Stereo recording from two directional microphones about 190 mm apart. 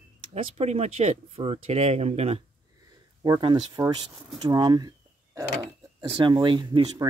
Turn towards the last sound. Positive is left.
turn(degrees=-25)  # may be behind; listen again after turning